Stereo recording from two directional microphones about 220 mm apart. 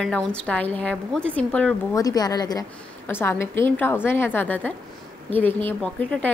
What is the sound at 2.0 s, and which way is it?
A woman's voice, 15° left (ahead or behind).